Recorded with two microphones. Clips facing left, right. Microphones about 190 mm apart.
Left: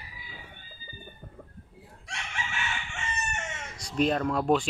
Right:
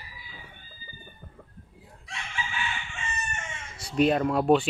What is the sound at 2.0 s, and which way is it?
Chicken, 75° left (ahead or behind).